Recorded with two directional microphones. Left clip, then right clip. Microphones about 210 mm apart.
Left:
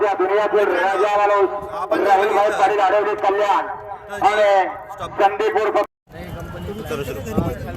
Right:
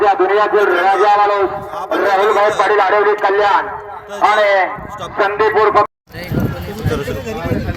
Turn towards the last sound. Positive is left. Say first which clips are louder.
# right 7 dB
turn(degrees=-15)  # may be behind; listen again after turning